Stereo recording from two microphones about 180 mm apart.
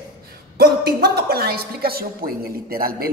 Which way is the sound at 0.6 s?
60° right (ahead or behind).